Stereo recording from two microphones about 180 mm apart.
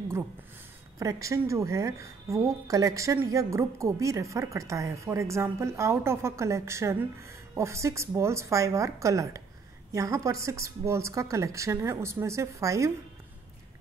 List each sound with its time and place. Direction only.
0.9 s a woman's voice: 15° right (ahead or behind)